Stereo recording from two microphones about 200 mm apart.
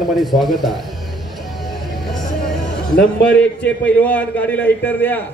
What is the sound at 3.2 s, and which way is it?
A man's voice, 5° left (ahead or behind).